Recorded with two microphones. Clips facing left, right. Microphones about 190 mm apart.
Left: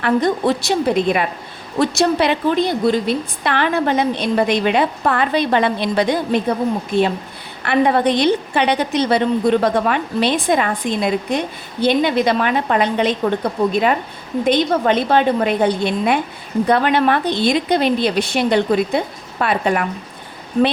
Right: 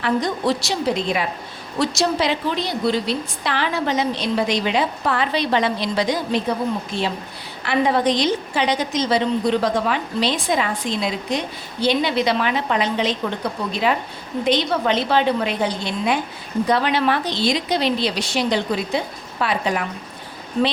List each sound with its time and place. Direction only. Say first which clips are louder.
0.0 s a woman's voice: left 4 dB; 55° left (ahead or behind)